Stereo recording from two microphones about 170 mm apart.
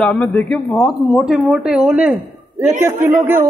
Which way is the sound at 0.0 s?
5° left (ahead or behind).